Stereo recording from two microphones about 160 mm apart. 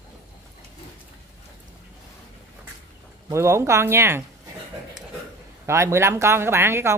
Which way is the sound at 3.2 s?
15° right (ahead or behind).